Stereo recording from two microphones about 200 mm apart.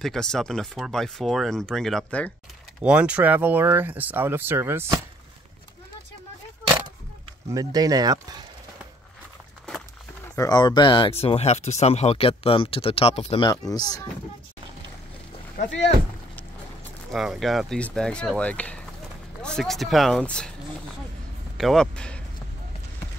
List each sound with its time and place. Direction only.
0.0 s speech: centre (ahead or behind)
2.8 s speech: 5° right (ahead or behind)
7.5 s speech: 20° right (ahead or behind)
9.7 s a sound: centre (ahead or behind)
10.3 s speech: 20° left (ahead or behind)
17.1 s speech: centre (ahead or behind)
21.5 s speech: centre (ahead or behind)